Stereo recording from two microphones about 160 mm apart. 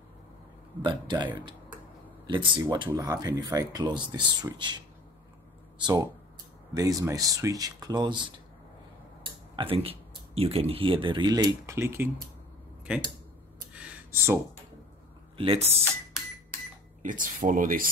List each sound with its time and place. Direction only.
0.8 s speech: 30° right (ahead or behind)
9.6 s speech: 35° right (ahead or behind); by 12.1 s 15° right (ahead or behind)
13.7 s a sound: 10° right (ahead or behind)
15.3 s speech: 35° right (ahead or behind)
17.0 s speech: 55° right (ahead or behind)